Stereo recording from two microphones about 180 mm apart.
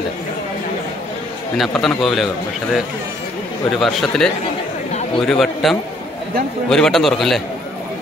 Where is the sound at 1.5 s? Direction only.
Centre (ahead or behind).